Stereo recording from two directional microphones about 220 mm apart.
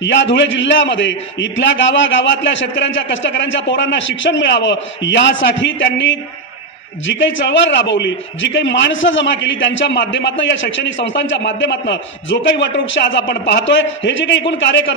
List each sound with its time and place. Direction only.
0.0 s a man's voice: 55° left (ahead or behind)